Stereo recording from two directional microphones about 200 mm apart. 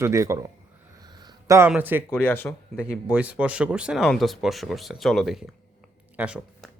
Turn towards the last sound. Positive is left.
turn(degrees=-5)  # may be behind; listen again after turning